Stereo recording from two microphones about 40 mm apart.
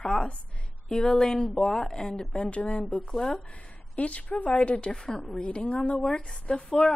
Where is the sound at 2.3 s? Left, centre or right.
Left.